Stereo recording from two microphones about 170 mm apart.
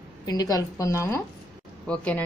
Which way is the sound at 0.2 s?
20° left (ahead or behind).